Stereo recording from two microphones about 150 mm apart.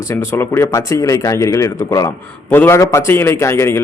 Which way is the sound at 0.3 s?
15° left (ahead or behind).